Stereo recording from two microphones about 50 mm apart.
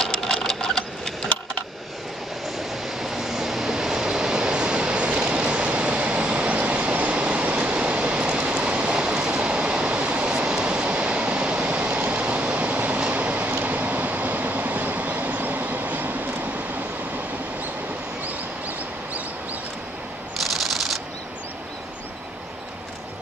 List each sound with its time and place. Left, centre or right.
0.0 s sewing machine: centre
2.5 s vehicle: centre; by 16.2 s right
20.3 s a sound: centre